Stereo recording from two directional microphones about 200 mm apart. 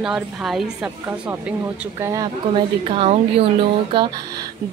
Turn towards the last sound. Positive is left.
turn(degrees=-20)  # may be behind; listen again after turning